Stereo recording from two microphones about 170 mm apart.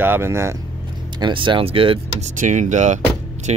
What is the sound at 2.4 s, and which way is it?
Speech, 50° right (ahead or behind).